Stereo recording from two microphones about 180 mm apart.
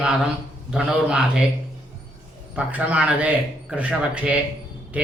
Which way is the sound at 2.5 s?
5° right (ahead or behind).